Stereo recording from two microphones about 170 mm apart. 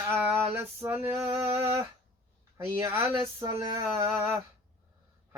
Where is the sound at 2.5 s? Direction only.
15° right (ahead or behind).